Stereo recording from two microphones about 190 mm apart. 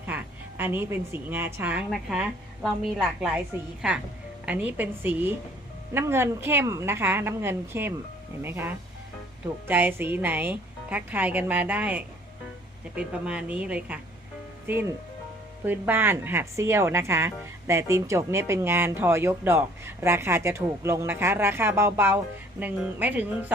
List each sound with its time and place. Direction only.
0.0 s a woman's voice: 10° right (ahead or behind)